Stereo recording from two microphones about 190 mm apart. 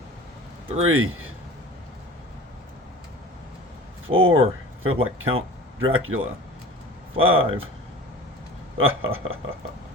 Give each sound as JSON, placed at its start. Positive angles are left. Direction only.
{"t": 0.9, "sound": "speech", "side_deg": -90}
{"t": 4.0, "sound": "speech", "side_deg": -90}
{"t": 8.8, "sound": "speech", "side_deg": -90}